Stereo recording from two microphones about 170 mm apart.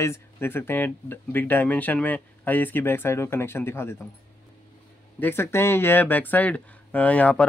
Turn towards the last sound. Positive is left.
turn(degrees=10)  # may be behind; listen again after turning